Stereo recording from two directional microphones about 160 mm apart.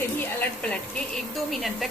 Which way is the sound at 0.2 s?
10° left (ahead or behind).